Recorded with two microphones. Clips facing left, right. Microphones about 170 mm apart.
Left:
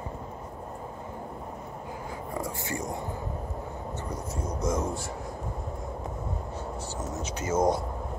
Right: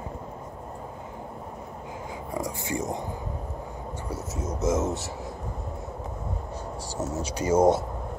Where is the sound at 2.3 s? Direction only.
15° right (ahead or behind).